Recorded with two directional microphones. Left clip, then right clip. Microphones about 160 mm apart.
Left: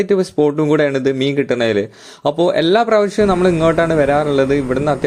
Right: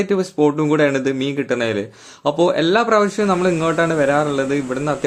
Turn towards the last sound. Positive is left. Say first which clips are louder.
# left 5 dB
turn(degrees=30)  # may be behind; listen again after turning